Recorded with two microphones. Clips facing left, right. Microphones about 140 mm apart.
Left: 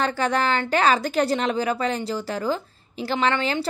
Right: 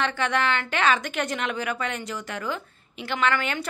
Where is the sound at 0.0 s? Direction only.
35° left (ahead or behind).